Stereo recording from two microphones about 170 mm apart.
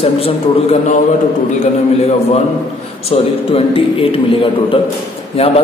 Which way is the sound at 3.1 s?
35° left (ahead or behind).